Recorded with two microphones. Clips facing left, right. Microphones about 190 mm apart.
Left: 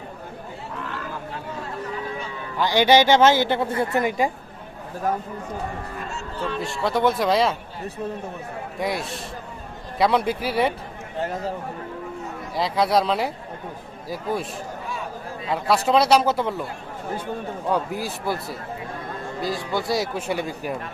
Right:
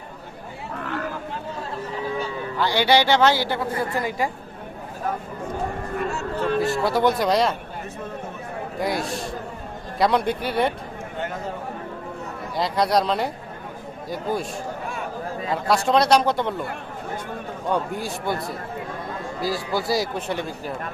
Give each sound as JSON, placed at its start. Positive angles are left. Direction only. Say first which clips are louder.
{"t": 2.6, "sound": "a woman's voice", "louder": "left 3 dB", "side_deg": 15}
{"t": 6.0, "sound": "speech", "louder": "right 6 dB", "side_deg": -55}
{"t": 6.8, "sound": "speech", "louder": "left 3 dB", "side_deg": 0}
{"t": 8.8, "sound": "speech", "louder": "right 2 dB", "side_deg": 0}
{"t": 12.5, "sound": "speech", "louder": "even", "side_deg": 0}
{"t": 15.5, "sound": "speech", "louder": "left 1 dB", "side_deg": 0}
{"t": 17.7, "sound": "speech", "louder": "even", "side_deg": 0}